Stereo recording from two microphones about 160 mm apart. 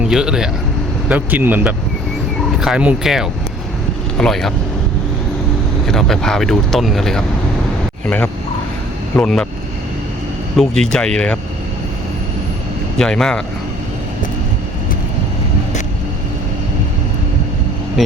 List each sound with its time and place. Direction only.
0.0 s speech: 5° right (ahead or behind)
5.8 s speech: centre (ahead or behind)
9.1 s speech: 5° left (ahead or behind)
10.6 s speech: 5° left (ahead or behind)
13.0 s speech: 5° left (ahead or behind)